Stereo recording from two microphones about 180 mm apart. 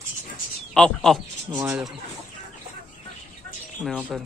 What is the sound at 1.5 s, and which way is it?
Speech, 20° right (ahead or behind).